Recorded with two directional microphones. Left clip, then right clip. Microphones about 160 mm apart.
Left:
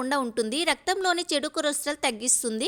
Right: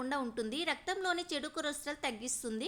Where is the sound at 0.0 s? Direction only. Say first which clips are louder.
Left 10 dB; 40° left (ahead or behind).